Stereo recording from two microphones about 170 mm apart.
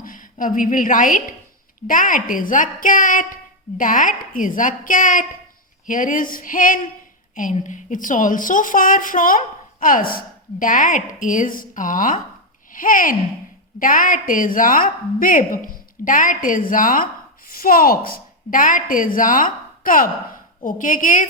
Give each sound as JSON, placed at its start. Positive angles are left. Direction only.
{"t": 0.0, "sound": "a woman's voice", "side_deg": 55}